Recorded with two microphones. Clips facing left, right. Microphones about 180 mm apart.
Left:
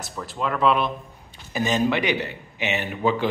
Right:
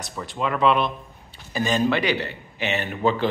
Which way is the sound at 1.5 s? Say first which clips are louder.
Even; 15° left (ahead or behind).